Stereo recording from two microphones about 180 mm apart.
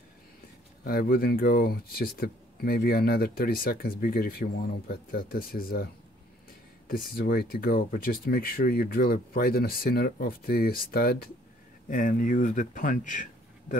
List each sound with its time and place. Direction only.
0.8 s speech: 55° left (ahead or behind)
6.9 s speech: 55° left (ahead or behind)
11.9 s speech: 50° left (ahead or behind)